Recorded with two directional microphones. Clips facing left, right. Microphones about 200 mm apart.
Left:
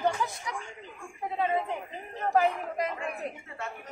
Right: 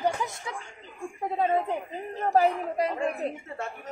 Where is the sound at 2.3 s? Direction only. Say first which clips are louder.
Right 3 dB; 35° right (ahead or behind).